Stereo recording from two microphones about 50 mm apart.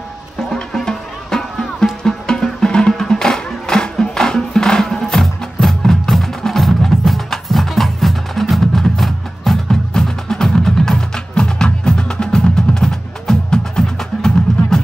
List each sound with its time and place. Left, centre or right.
0.4 s music: centre